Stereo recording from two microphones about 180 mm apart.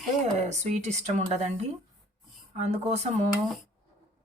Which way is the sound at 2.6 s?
40° right (ahead or behind).